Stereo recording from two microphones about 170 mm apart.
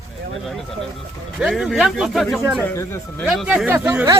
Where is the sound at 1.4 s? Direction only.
Centre (ahead or behind).